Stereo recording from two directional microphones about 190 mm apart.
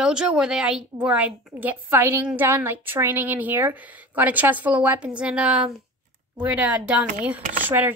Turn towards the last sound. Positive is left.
turn(degrees=-10)  # may be behind; listen again after turning